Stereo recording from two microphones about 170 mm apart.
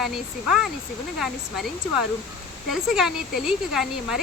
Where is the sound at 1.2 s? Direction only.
Centre (ahead or behind).